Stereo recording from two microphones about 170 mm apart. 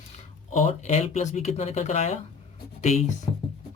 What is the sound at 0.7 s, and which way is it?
Speech, 40° left (ahead or behind).